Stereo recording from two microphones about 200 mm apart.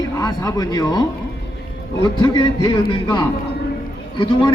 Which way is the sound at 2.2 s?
20° left (ahead or behind).